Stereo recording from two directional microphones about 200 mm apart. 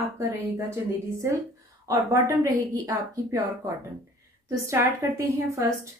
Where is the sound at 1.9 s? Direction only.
15° right (ahead or behind).